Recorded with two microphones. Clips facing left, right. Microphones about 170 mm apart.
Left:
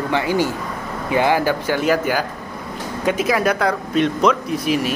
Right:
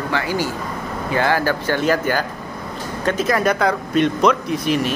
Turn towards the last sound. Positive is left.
turn(degrees=5)  # may be behind; listen again after turning